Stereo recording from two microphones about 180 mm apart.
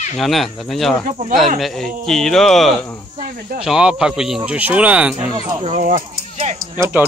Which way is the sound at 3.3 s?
55° right (ahead or behind).